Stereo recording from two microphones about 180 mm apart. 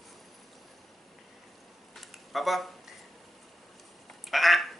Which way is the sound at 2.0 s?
Centre (ahead or behind).